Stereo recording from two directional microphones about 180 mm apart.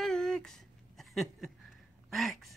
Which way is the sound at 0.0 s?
5° left (ahead or behind).